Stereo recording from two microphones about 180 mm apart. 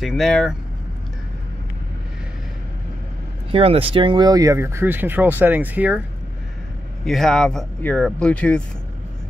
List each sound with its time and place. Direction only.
0.0 s speech: centre (ahead or behind)
3.5 s speech: 30° right (ahead or behind); by 6.0 s 10° right (ahead or behind)
7.1 s speech: centre (ahead or behind)